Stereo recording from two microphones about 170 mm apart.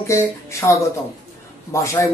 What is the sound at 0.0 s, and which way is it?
Speech, 15° left (ahead or behind).